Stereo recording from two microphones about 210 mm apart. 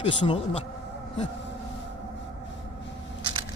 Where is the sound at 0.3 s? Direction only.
25° left (ahead or behind).